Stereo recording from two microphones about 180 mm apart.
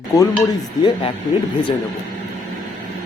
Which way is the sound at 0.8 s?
25° left (ahead or behind).